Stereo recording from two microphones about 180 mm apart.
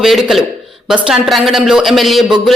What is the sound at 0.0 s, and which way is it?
A woman's voice, centre (ahead or behind).